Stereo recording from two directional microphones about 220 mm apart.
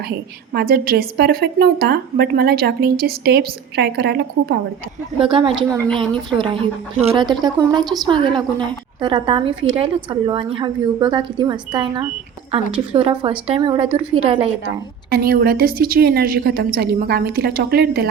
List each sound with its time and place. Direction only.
0.5 s a woman's voice: 45° right (ahead or behind)
5.2 s speech: 25° right (ahead or behind)
15.1 s a woman's voice: 45° right (ahead or behind)